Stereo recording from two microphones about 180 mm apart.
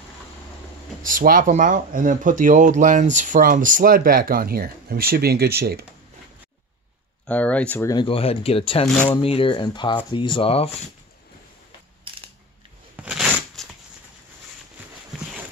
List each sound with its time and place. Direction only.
1.0 s speech: 50° right (ahead or behind)
7.2 s speech: 5° left (ahead or behind)
7.9 s speech: 30° left (ahead or behind)
12.9 s shuffling cards: 5° right (ahead or behind)
15.1 s a sound: centre (ahead or behind)